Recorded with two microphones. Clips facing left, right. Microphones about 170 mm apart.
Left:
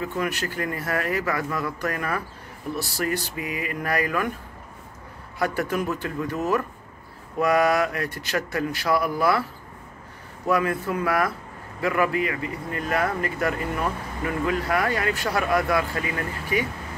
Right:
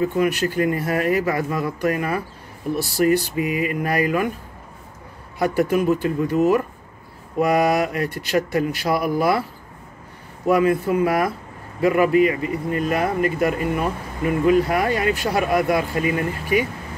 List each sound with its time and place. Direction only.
0.2 s speech: 15° right (ahead or behind)
5.4 s speech: 15° right (ahead or behind)
10.4 s speech: 15° right (ahead or behind)